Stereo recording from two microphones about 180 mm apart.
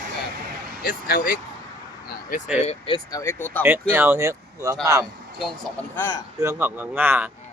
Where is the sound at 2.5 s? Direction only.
35° left (ahead or behind).